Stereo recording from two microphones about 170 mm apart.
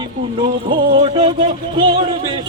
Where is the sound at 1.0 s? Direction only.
30° right (ahead or behind).